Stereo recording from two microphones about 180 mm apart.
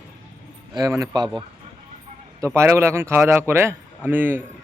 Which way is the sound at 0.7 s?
20° right (ahead or behind).